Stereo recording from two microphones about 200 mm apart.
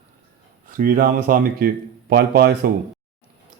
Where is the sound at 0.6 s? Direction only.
45° right (ahead or behind).